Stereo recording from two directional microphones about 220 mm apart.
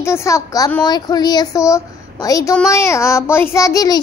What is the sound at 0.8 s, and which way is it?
A child's voice, 20° left (ahead or behind).